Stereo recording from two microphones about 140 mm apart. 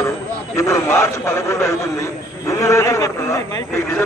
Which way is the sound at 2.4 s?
20° left (ahead or behind).